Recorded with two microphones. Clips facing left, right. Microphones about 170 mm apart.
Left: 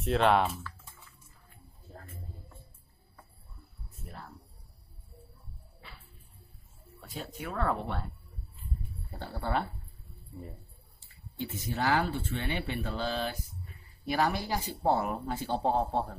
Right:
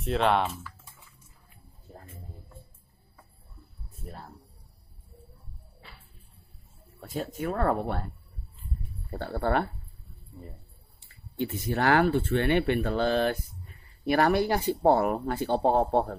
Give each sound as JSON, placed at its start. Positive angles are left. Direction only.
{"t": 0.0, "sound": "speech", "side_deg": 0}
{"t": 4.0, "sound": "a sound", "side_deg": -40}
{"t": 7.1, "sound": "speech", "side_deg": -45}
{"t": 9.1, "sound": "speech", "side_deg": -60}
{"t": 11.0, "sound": "speech", "side_deg": -60}